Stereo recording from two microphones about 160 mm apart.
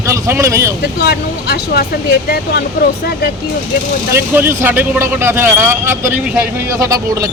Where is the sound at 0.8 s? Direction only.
90° left.